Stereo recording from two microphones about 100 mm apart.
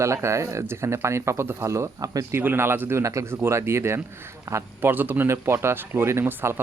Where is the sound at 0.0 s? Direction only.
30° right (ahead or behind).